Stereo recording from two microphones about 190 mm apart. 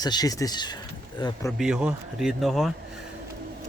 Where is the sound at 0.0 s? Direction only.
20° left (ahead or behind).